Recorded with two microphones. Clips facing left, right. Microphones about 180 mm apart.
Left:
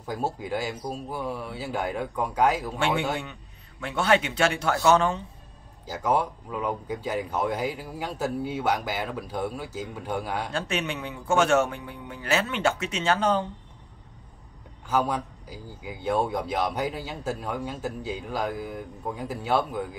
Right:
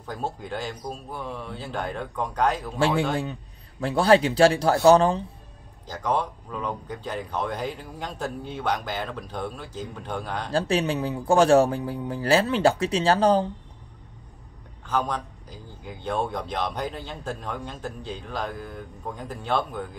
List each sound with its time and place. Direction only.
0.0 s a man's voice: 10° left (ahead or behind)
3.8 s a man's voice: 35° right (ahead or behind)
5.9 s a man's voice: 10° left (ahead or behind)
10.5 s a man's voice: 35° right (ahead or behind)
14.9 s a man's voice: 10° left (ahead or behind)